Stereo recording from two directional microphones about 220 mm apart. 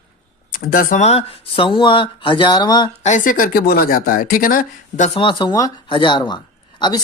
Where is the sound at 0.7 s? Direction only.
40° left (ahead or behind); by 2.8 s 20° left (ahead or behind).